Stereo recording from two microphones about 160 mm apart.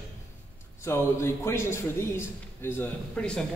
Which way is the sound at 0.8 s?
15° left (ahead or behind).